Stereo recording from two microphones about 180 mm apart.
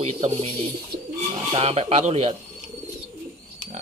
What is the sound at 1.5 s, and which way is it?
Speech, 35° right (ahead or behind).